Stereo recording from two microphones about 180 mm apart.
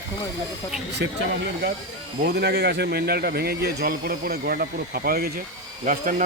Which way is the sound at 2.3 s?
65° right (ahead or behind).